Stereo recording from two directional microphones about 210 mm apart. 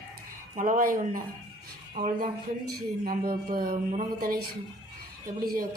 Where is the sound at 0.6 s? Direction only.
40° right (ahead or behind).